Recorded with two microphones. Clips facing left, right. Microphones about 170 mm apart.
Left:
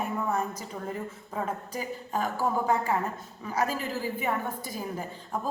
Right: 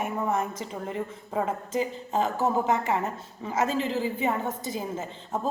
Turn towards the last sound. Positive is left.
turn(degrees=-20)  # may be behind; listen again after turning